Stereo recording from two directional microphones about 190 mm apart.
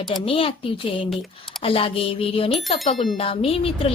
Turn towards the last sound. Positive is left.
turn(degrees=30)  # may be behind; listen again after turning